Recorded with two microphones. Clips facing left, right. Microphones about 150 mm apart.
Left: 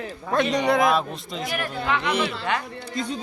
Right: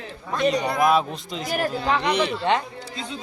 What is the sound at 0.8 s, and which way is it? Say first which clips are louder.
Speech: right 2 dB; centre (ahead or behind).